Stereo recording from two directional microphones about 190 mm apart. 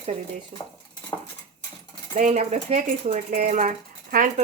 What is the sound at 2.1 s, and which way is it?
Speech, 40° right (ahead or behind).